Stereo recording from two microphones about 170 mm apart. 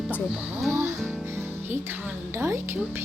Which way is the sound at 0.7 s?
15° right (ahead or behind).